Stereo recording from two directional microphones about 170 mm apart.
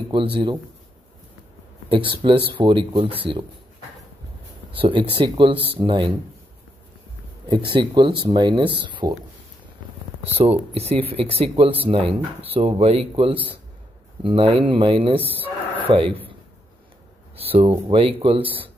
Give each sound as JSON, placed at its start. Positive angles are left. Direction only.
{"t": 0.1, "sound": "speech", "side_deg": -30}
{"t": 1.9, "sound": "speech", "side_deg": -30}
{"t": 4.7, "sound": "speech", "side_deg": -30}
{"t": 7.4, "sound": "speech", "side_deg": -25}
{"t": 10.3, "sound": "speech", "side_deg": -35}
{"t": 15.3, "sound": "a sound", "side_deg": -10}
{"t": 15.9, "sound": "speech", "side_deg": -30}
{"t": 17.5, "sound": "speech", "side_deg": -35}
{"t": 18.4, "sound": "speech", "side_deg": -10}